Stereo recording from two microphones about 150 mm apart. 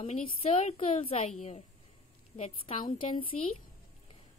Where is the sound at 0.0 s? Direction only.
45° left (ahead or behind).